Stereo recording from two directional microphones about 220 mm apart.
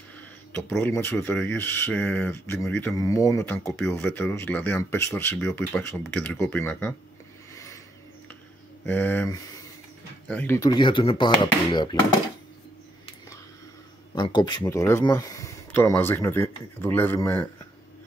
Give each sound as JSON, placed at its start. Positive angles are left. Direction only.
{"t": 0.5, "sound": "speech", "side_deg": 10}
{"t": 7.5, "sound": "a sound", "side_deg": 15}
{"t": 8.8, "sound": "speech", "side_deg": 10}
{"t": 14.1, "sound": "speech", "side_deg": 20}